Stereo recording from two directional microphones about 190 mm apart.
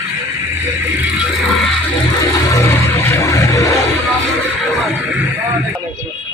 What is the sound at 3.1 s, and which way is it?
Music, 15° left (ahead or behind).